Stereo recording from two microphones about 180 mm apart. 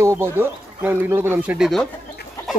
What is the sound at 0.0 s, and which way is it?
Speech, 15° right (ahead or behind).